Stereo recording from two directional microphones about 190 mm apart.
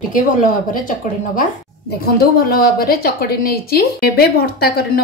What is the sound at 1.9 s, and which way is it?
A woman's voice, 55° left (ahead or behind).